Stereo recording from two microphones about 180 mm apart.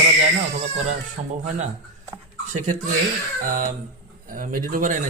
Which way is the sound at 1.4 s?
40° right (ahead or behind).